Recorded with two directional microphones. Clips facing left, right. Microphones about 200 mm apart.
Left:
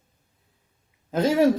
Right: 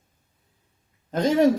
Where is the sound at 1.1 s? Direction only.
5° left (ahead or behind).